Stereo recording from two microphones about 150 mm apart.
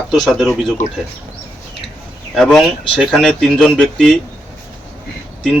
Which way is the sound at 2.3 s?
Centre (ahead or behind).